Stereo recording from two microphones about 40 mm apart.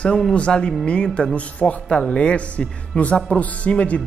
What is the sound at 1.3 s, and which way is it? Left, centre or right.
Speech, left.